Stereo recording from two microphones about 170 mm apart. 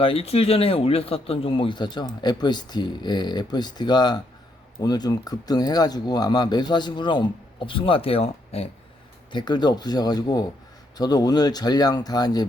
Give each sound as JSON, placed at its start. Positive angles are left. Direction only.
{"t": 0.0, "sound": "speech", "side_deg": 35}
{"t": 9.3, "sound": "speech", "side_deg": 25}